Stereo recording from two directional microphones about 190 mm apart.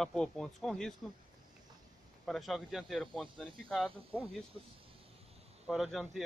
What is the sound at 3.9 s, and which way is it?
Speech, 30° right (ahead or behind).